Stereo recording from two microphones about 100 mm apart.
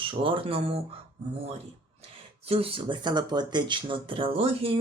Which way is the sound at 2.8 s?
50° right (ahead or behind).